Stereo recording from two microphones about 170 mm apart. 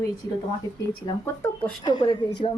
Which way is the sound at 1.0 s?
15° left (ahead or behind).